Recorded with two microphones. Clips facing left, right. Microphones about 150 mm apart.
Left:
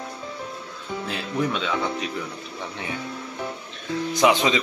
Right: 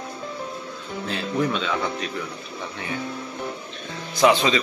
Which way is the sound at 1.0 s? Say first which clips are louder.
Right 2 dB; 10° left (ahead or behind).